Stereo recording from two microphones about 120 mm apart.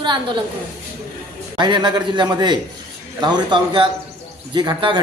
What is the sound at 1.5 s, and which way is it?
A man's voice, 40° right (ahead or behind).